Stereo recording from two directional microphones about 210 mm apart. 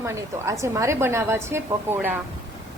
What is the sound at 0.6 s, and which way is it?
A woman's voice, 15° right (ahead or behind).